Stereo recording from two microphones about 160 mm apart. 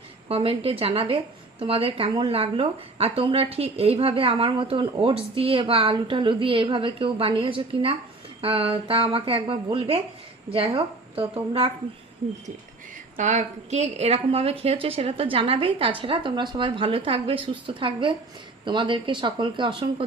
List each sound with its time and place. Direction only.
0.3 s a woman's voice: 35° right (ahead or behind)
13.1 s a woman's voice: 45° right (ahead or behind); by 20.1 s 30° right (ahead or behind)